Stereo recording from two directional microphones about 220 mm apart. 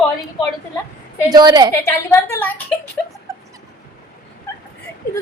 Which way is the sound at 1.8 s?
10° left (ahead or behind).